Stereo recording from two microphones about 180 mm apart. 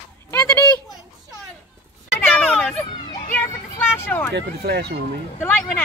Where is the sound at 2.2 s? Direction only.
5° left (ahead or behind).